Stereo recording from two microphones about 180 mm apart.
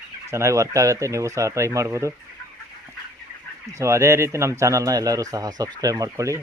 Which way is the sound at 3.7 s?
15° right (ahead or behind).